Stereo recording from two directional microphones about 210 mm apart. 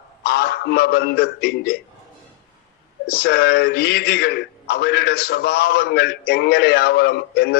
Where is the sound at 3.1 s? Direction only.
45° left (ahead or behind).